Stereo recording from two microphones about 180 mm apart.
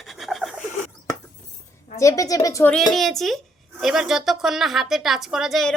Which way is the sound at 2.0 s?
20° left (ahead or behind).